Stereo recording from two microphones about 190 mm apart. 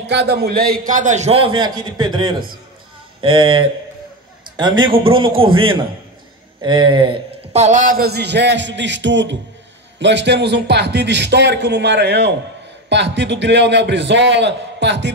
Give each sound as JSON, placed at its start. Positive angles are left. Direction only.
{"t": 0.0, "sound": "a man's voice", "side_deg": -65}